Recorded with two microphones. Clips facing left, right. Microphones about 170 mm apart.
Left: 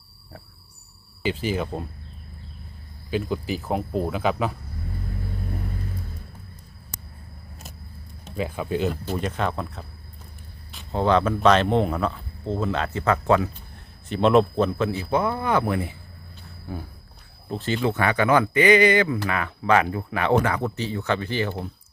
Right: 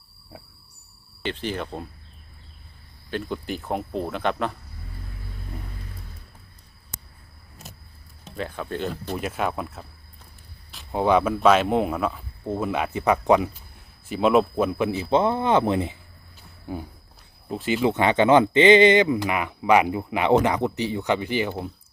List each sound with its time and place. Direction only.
1.2 s speech: 5° left (ahead or behind)
3.1 s speech: 5° left (ahead or behind)
8.4 s speech: 10° left (ahead or behind)
9.1 s speech: 5° right (ahead or behind)
10.9 s speech: 10° right (ahead or behind)